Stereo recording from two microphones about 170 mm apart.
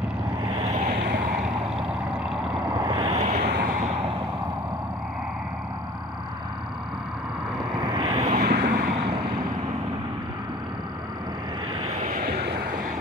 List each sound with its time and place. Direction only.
0.6 s boat: 40° right (ahead or behind)
1.3 s vehicle: 5° right (ahead or behind)
2.8 s a sound: 30° right (ahead or behind)
3.4 s vehicle: 70° right (ahead or behind)
3.7 s a sound: 40° right (ahead or behind)
7.9 s vehicle: 30° right (ahead or behind)
8.5 s vehicle: 60° right (ahead or behind)
12.1 s vehicle: 65° right (ahead or behind)